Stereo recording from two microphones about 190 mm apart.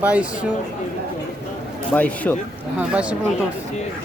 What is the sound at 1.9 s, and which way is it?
Speech, 10° left (ahead or behind).